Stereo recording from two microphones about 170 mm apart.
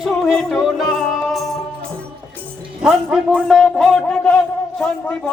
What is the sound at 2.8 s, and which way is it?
Music, centre (ahead or behind).